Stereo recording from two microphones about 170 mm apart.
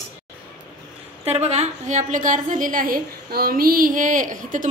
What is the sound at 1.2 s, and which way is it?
A woman's voice, 40° right (ahead or behind).